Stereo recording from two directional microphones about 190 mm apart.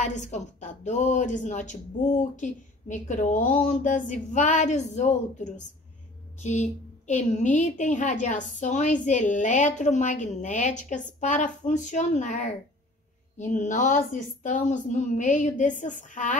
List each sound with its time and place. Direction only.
0.0 s a woman's voice: 40° left (ahead or behind)